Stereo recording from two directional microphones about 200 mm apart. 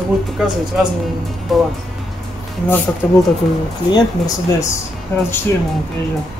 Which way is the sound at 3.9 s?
20° left (ahead or behind).